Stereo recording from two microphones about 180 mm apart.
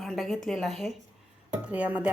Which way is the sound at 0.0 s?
Centre (ahead or behind).